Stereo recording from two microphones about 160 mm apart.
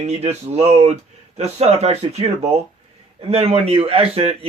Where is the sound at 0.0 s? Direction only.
40° right (ahead or behind).